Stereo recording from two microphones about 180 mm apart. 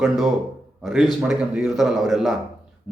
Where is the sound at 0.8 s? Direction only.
Centre (ahead or behind).